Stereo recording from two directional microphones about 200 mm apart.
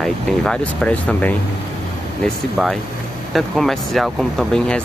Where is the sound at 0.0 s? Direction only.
5° left (ahead or behind).